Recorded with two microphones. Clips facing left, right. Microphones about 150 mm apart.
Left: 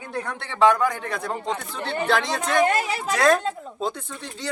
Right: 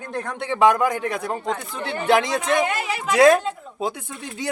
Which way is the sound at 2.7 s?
40° left (ahead or behind).